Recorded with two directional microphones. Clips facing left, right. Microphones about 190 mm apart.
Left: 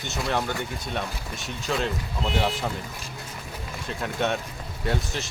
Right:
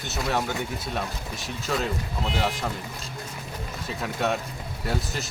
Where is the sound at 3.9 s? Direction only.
Centre (ahead or behind).